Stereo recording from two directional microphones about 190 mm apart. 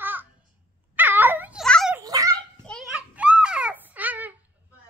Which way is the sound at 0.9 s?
10° right (ahead or behind).